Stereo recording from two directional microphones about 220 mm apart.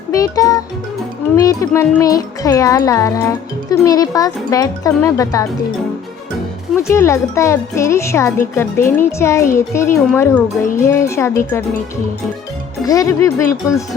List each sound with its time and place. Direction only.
0.1 s music: 15° left (ahead or behind)
6.8 s music: 10° left (ahead or behind)
12.8 s music: 15° left (ahead or behind)